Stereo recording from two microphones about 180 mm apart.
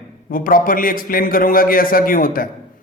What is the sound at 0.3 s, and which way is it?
A man's voice, 50° left (ahead or behind).